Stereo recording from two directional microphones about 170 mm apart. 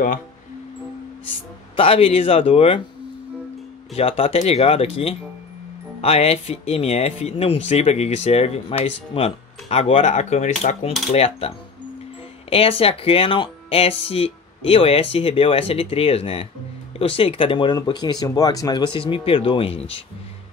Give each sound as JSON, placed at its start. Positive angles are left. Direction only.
{"t": 1.8, "sound": "speech", "side_deg": 35}
{"t": 3.9, "sound": "speech", "side_deg": 35}